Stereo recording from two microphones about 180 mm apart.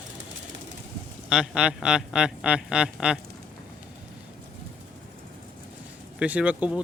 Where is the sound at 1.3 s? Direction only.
5° right (ahead or behind).